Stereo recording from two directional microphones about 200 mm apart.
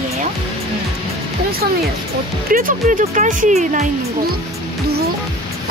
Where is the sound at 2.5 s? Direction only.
45° right (ahead or behind).